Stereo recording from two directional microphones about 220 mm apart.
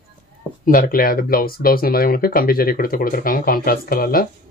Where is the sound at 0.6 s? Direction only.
40° left (ahead or behind).